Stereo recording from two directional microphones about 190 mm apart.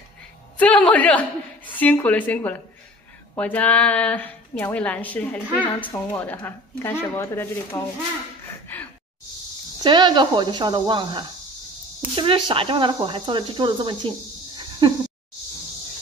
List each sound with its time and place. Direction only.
0.6 s a woman's voice: 5° left (ahead or behind)
8.5 s gasp: 10° left (ahead or behind)
9.8 s speech: 25° right (ahead or behind)
14.6 s a sound: 25° right (ahead or behind)